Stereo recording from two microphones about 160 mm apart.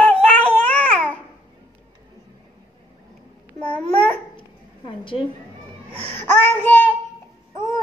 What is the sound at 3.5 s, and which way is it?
Babbling, 10° left (ahead or behind).